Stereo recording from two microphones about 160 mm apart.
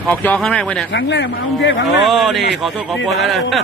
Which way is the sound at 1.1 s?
90° left.